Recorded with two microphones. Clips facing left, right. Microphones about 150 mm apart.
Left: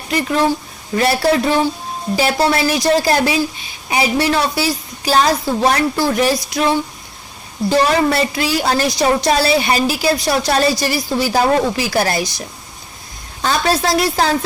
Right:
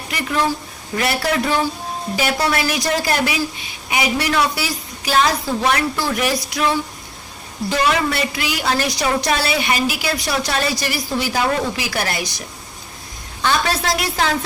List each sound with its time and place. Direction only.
0.1 s a woman's voice: 30° left (ahead or behind)
13.4 s a woman's voice: 35° left (ahead or behind)